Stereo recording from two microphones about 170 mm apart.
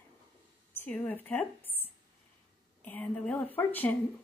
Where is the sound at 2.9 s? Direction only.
10° left (ahead or behind).